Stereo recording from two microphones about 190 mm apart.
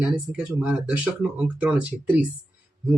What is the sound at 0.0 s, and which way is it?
Speech, 5° right (ahead or behind).